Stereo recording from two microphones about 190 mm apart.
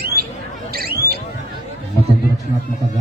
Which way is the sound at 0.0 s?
55° right (ahead or behind).